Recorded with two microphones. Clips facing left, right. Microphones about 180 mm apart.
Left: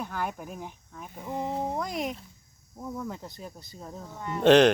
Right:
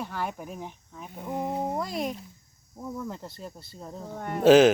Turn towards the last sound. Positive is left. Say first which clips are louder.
# right 2 dB
turn(degrees=-5)  # may be behind; listen again after turning